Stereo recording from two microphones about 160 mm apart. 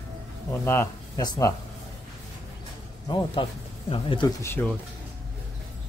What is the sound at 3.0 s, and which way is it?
A man's voice, 30° left (ahead or behind).